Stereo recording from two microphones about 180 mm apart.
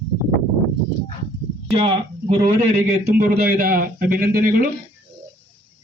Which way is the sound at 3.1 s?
55° right (ahead or behind).